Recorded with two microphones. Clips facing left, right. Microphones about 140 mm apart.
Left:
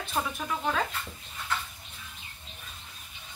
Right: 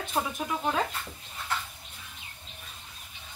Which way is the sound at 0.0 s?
15° right (ahead or behind).